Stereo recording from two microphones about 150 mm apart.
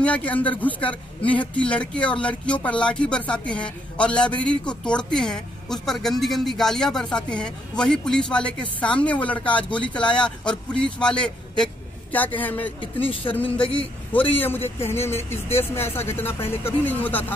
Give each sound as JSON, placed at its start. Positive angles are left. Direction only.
{"t": 0.0, "sound": "a man's voice", "side_deg": 10}